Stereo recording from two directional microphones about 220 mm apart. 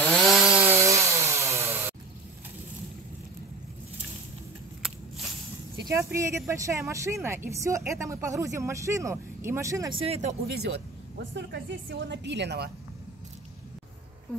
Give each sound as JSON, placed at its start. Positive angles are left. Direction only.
{"t": 0.0, "sound": "chainsaw", "side_deg": 0}
{"t": 5.8, "sound": "a sound", "side_deg": -15}
{"t": 6.1, "sound": "a woman's voice", "side_deg": -15}
{"t": 10.0, "sound": "speech", "side_deg": -30}
{"t": 10.6, "sound": "a woman's voice", "side_deg": -50}